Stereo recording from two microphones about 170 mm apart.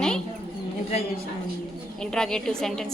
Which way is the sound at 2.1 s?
5° left (ahead or behind).